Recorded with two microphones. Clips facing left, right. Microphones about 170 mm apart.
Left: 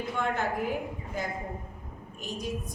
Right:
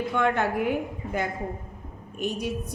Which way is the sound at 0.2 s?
65° right (ahead or behind).